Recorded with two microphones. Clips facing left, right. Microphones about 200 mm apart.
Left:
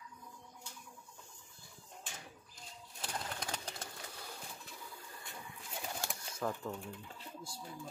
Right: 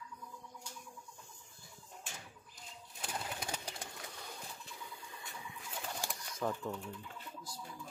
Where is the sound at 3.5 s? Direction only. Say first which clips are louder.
Even; 10° right (ahead or behind).